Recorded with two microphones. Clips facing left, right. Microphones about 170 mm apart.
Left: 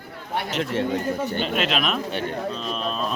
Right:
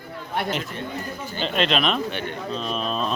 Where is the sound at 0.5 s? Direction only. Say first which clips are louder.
Left 5 dB; 90° left.